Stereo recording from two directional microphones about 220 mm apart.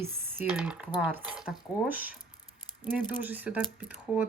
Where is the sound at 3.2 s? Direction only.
10° right (ahead or behind).